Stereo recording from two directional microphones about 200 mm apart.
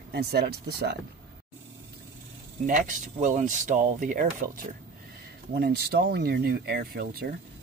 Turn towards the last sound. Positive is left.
turn(degrees=-50)  # may be behind; listen again after turning